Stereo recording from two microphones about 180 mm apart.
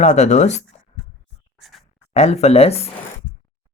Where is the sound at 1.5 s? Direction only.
Centre (ahead or behind).